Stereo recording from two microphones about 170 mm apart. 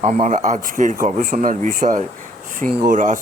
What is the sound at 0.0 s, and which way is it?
Speech, 40° right (ahead or behind).